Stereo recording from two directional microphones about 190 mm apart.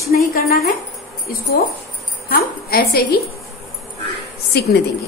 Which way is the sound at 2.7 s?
55° left (ahead or behind).